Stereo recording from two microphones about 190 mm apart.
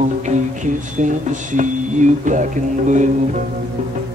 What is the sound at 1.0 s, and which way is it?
Music, 40° right (ahead or behind).